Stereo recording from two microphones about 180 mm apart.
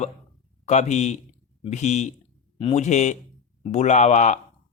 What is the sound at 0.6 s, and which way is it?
A man's voice, 40° left (ahead or behind).